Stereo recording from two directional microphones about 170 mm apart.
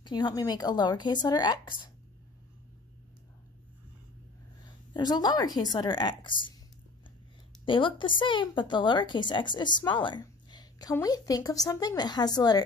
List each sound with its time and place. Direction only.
0.0 s speech: 25° left (ahead or behind)
4.9 s speech: 25° left (ahead or behind)
7.6 s speech: 30° left (ahead or behind)